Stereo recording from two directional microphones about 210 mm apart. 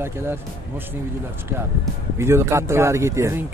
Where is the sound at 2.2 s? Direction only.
10° right (ahead or behind).